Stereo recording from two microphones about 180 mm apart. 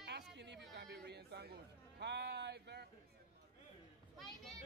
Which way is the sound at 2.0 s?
70° right (ahead or behind).